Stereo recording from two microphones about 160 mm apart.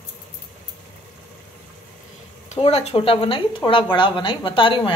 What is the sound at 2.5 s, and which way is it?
Speech, 40° left (ahead or behind).